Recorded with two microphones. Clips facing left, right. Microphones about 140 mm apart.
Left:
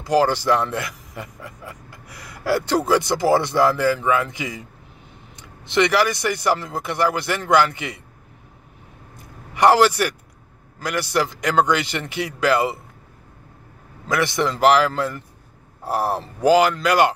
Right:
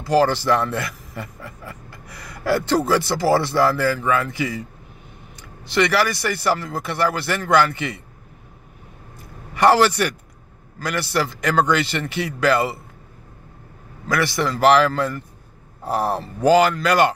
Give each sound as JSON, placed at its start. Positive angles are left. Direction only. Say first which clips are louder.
{"t": 0.0, "sound": "speech", "louder": "right 1 dB", "side_deg": 15}
{"t": 9.5, "sound": "speech", "louder": "even", "side_deg": 15}
{"t": 14.0, "sound": "speech", "louder": "even", "side_deg": 20}